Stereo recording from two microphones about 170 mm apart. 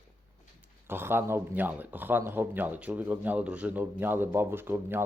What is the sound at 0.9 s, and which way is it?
A man's voice, 15° right (ahead or behind).